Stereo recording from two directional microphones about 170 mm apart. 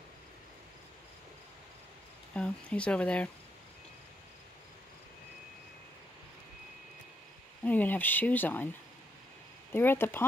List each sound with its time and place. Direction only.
2.3 s speech: 5° left (ahead or behind)
7.6 s speech: 10° left (ahead or behind)
9.7 s speech: 15° left (ahead or behind)